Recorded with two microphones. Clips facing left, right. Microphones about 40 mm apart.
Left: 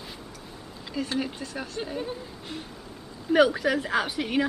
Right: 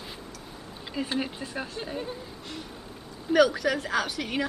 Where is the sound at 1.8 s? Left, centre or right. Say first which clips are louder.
Left 2 dB; centre.